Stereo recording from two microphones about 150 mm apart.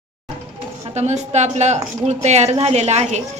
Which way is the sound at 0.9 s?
50° right (ahead or behind).